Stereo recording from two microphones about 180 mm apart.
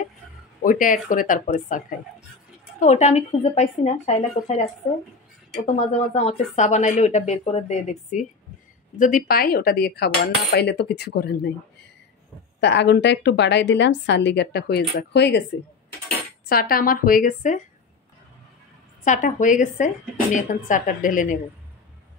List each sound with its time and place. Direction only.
0.6 s speech: 50° left (ahead or behind)
2.8 s a woman's voice: 40° left (ahead or behind)
6.1 s a woman's voice: 40° left (ahead or behind)
8.9 s cutlery: 50° left (ahead or behind); by 11.5 s 65° left (ahead or behind)
12.5 s a woman's voice: 75° left (ahead or behind)
16.4 s speech: 55° left (ahead or behind)
19.0 s speech: 45° left (ahead or behind)